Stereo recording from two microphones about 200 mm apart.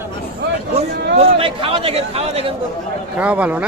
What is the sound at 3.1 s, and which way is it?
Speech, 5° right (ahead or behind).